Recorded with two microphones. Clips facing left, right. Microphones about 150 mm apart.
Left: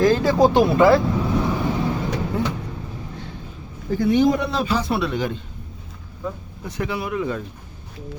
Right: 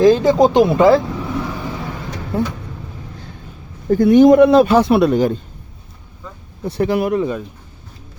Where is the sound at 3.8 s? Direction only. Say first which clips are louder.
Right 8 dB; 50° right (ahead or behind).